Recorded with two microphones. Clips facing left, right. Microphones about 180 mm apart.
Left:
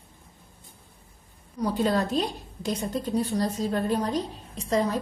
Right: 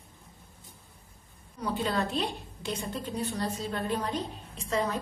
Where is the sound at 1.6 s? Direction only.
40° left (ahead or behind).